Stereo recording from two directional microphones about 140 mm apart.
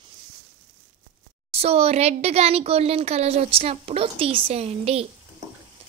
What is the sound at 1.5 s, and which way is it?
A woman's voice, 45° right (ahead or behind).